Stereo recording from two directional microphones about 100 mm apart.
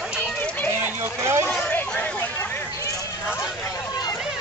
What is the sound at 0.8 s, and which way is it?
Run, 25° right (ahead or behind).